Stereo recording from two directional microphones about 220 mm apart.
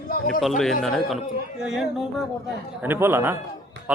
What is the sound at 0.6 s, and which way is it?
A man's voice, centre (ahead or behind).